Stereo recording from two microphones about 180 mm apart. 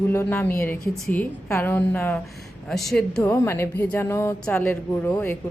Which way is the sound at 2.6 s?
Centre (ahead or behind).